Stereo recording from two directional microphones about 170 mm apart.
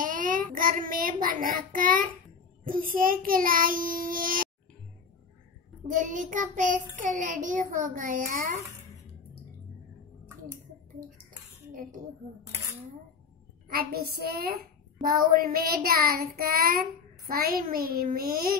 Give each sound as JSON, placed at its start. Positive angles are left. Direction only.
{"t": 0.0, "sound": "a child's voice", "side_deg": -50}
{"t": 2.6, "sound": "child singing", "side_deg": -55}
{"t": 5.9, "sound": "child singing", "side_deg": -50}
{"t": 13.7, "sound": "child singing", "side_deg": -65}